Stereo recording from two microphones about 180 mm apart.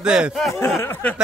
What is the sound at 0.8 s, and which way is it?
Speech, 10° left (ahead or behind).